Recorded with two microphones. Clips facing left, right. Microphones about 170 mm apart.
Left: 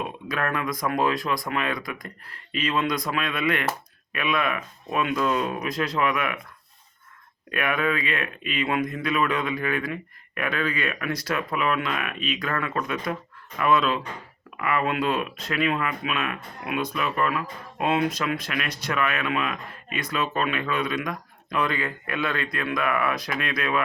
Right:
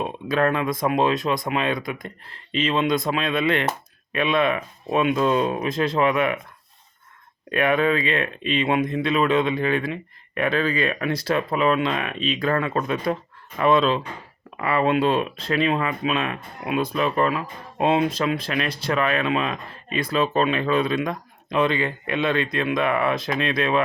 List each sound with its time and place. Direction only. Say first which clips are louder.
0.0 s speech: right 7 dB; 30° right (ahead or behind)
7.5 s speech: right 5 dB; 30° right (ahead or behind)